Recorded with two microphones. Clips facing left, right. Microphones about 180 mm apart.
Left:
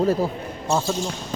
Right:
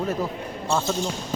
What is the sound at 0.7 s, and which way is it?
Speech, 5° left (ahead or behind).